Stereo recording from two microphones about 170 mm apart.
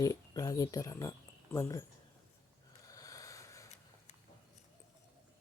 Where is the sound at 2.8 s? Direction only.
20° left (ahead or behind).